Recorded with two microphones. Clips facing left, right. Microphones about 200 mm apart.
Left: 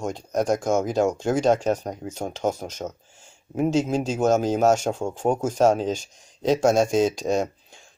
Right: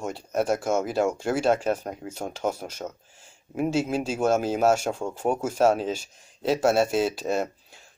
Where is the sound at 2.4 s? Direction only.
30° left (ahead or behind).